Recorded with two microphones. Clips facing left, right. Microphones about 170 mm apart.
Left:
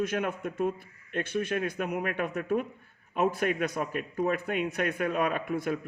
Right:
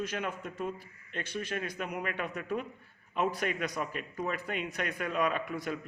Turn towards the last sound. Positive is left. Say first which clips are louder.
# left 4 dB
turn(degrees=50)  # may be behind; listen again after turning